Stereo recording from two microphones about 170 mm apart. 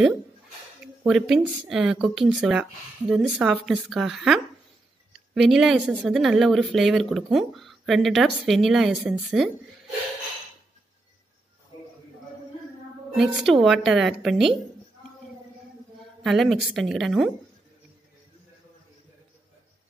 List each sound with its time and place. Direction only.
1.0 s speech: centre (ahead or behind)
13.1 s speech: centre (ahead or behind)
16.2 s speech: centre (ahead or behind)